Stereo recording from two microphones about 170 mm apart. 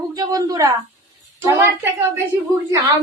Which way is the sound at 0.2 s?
20° right (ahead or behind).